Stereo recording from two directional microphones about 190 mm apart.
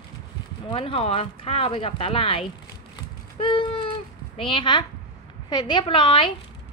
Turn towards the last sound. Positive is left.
turn(degrees=25)  # may be behind; listen again after turning